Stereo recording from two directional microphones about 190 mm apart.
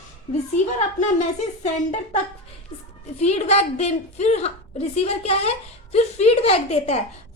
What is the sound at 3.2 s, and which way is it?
A woman's voice, 35° left (ahead or behind).